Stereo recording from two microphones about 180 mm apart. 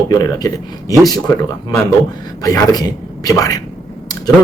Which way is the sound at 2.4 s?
20° left (ahead or behind).